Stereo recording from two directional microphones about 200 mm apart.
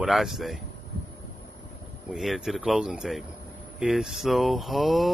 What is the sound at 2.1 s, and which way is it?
Mantra, centre (ahead or behind).